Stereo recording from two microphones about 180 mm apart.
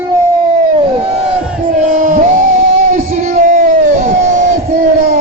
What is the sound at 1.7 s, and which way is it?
Music, 45° right (ahead or behind).